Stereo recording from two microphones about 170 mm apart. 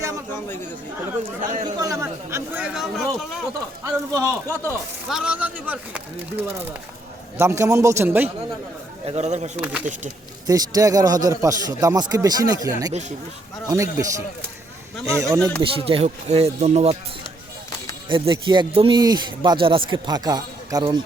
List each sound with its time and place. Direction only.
1.6 s a man's voice: 20° right (ahead or behind)
2.6 s speech: centre (ahead or behind)
3.8 s speech: 15° right (ahead or behind)
5.0 s speech: 5° right (ahead or behind)
9.0 s speech: 40° right (ahead or behind)
10.4 s a man's voice: 20° right (ahead or behind)
12.9 s speech: 45° right (ahead or behind)
13.7 s a man's voice: 20° right (ahead or behind)
15.4 s speech: 5° left (ahead or behind)
15.6 s speech: 30° right (ahead or behind)
18.1 s a man's voice: 30° right (ahead or behind)